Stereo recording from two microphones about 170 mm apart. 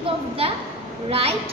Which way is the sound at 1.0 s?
35° right (ahead or behind).